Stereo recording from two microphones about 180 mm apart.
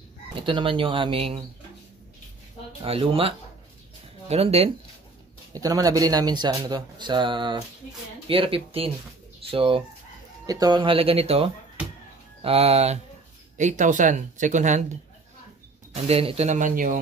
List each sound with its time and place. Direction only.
0.4 s speech: 30° right (ahead or behind)
2.8 s speech: 30° right (ahead or behind)
5.5 s speech: 20° right (ahead or behind); by 17.0 s 50° right (ahead or behind)